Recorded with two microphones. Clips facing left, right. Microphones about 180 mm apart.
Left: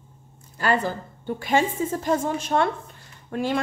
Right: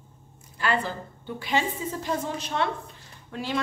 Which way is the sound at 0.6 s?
45° left (ahead or behind).